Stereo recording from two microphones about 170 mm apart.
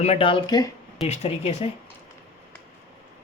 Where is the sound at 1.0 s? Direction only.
40° left (ahead or behind).